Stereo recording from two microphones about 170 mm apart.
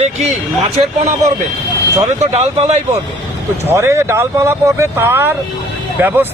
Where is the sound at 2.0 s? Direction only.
35° right (ahead or behind).